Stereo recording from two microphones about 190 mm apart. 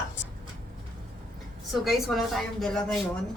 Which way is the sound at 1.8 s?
Centre (ahead or behind).